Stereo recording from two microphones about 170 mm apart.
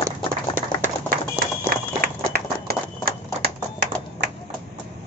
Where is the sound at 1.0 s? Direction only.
60° right (ahead or behind).